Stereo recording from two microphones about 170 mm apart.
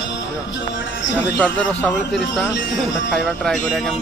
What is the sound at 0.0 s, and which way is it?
Music, 90° left.